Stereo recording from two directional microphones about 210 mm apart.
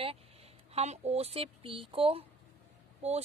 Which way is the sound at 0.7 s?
30° right (ahead or behind).